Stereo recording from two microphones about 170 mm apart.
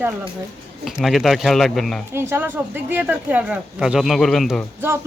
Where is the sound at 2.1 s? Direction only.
15° right (ahead or behind); by 4.7 s centre (ahead or behind).